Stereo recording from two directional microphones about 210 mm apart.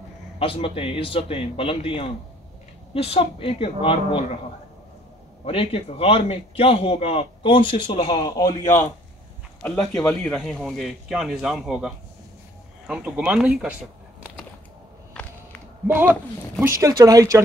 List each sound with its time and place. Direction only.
0.4 s a man's voice: 25° left (ahead or behind)
5.4 s a man's voice: 25° left (ahead or behind)
9.6 s speech: 5° left (ahead or behind)
15.2 s a sound: 5° left (ahead or behind)
16.8 s speech: 15° right (ahead or behind)